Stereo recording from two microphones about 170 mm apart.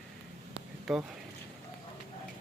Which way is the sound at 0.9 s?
Centre (ahead or behind).